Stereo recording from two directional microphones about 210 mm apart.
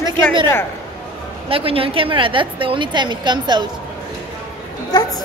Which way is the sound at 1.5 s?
25° right (ahead or behind).